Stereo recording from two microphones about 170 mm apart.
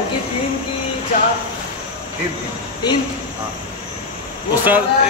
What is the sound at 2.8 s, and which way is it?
Speech, 25° left (ahead or behind).